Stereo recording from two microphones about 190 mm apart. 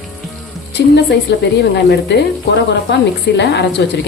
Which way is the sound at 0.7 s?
60° left (ahead or behind).